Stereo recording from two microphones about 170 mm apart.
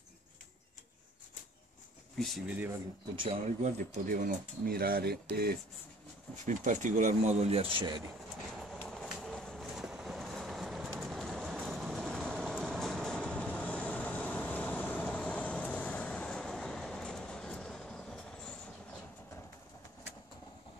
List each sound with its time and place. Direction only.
2.1 s speech: centre (ahead or behind)
3.2 s speech: 40° right (ahead or behind); by 5.6 s 65° right (ahead or behind)
6.4 s speech: 45° right (ahead or behind); by 8.0 s 30° right (ahead or behind)
8.5 s vehicle: centre (ahead or behind)